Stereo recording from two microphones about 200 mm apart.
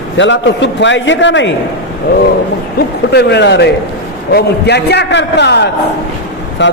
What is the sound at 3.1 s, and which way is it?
A man's voice, 60° left (ahead or behind).